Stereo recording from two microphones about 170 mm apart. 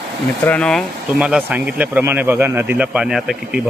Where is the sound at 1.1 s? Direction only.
5° right (ahead or behind).